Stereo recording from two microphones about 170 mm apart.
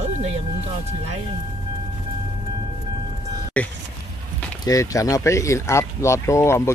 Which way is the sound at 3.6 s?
10° left (ahead or behind).